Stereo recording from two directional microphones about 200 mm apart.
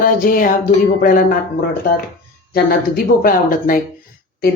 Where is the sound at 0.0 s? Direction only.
45° left (ahead or behind).